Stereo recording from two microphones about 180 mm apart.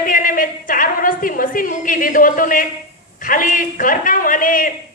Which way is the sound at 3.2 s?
50° left (ahead or behind).